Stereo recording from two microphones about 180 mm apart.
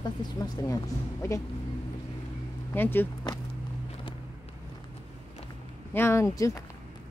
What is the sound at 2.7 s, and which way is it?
Speech, 10° left (ahead or behind).